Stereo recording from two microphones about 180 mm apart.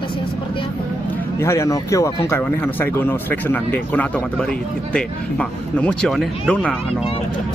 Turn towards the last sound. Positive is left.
turn(degrees=5)  # may be behind; listen again after turning